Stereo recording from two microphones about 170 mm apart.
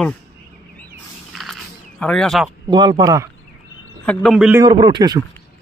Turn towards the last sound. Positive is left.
turn(degrees=-25)  # may be behind; listen again after turning